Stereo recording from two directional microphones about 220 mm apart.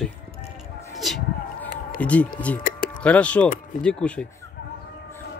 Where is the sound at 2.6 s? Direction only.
40° left (ahead or behind).